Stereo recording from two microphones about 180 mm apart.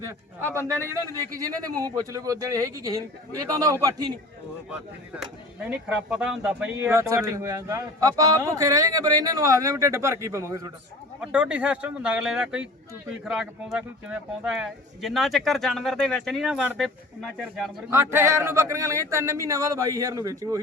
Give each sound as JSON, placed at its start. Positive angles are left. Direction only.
{"t": 0.0, "sound": "a man's voice", "side_deg": -15}
{"t": 4.7, "sound": "speech", "side_deg": -5}
{"t": 6.9, "sound": "a man's voice", "side_deg": -15}
{"t": 11.2, "sound": "speech", "side_deg": -5}
{"t": 17.9, "sound": "speech", "side_deg": -15}